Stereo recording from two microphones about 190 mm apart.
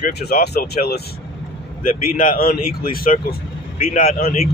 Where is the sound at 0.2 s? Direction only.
60° left (ahead or behind).